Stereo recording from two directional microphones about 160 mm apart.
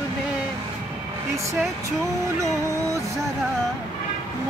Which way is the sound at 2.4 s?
20° right (ahead or behind).